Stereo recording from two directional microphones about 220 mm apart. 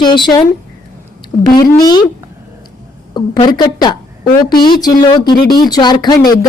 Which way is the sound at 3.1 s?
20° left (ahead or behind).